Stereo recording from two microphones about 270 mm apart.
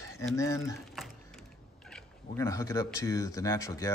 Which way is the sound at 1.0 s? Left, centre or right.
Centre.